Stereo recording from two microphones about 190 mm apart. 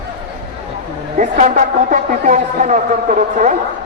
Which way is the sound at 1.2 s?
40° right (ahead or behind).